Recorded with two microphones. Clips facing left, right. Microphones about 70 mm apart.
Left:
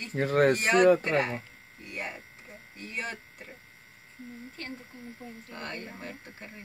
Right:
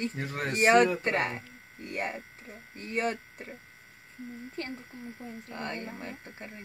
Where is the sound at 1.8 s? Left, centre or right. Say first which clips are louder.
Right 4 dB; right.